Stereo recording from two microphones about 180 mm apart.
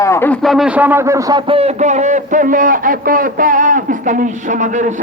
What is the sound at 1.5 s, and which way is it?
A man's voice, 40° right (ahead or behind).